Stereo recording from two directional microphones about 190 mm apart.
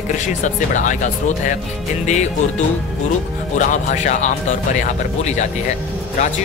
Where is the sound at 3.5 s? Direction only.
40° left (ahead or behind).